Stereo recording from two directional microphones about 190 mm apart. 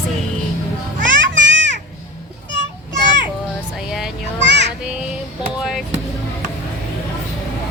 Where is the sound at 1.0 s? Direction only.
75° right (ahead or behind).